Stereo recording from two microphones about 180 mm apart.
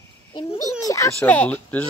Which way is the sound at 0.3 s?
20° left (ahead or behind).